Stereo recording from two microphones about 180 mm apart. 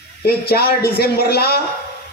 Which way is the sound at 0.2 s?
60° left (ahead or behind).